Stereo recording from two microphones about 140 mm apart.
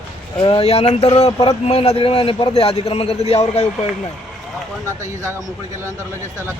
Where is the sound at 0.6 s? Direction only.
45° left (ahead or behind).